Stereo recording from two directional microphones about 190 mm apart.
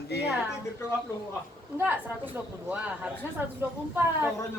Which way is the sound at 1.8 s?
10° right (ahead or behind).